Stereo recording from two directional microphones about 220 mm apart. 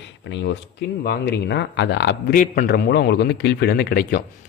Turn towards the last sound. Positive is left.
turn(degrees=45)  # may be behind; listen again after turning